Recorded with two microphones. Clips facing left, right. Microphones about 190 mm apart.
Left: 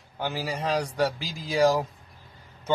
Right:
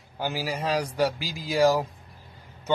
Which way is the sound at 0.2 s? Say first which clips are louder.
Right 1 dB; 5° right (ahead or behind).